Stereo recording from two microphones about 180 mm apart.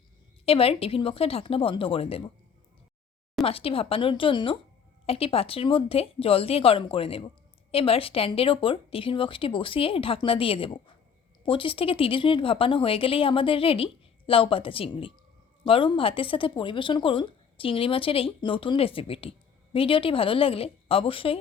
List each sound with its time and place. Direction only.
0.4 s speech: 30° left (ahead or behind)
3.4 s speech: 30° left (ahead or behind)